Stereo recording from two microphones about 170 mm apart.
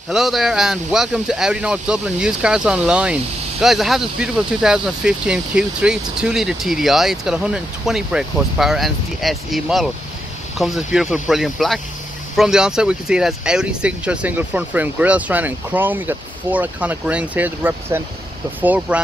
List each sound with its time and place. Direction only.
0.1 s speech: centre (ahead or behind)